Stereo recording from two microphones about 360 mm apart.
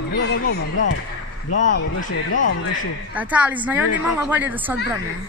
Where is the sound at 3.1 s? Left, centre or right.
Centre.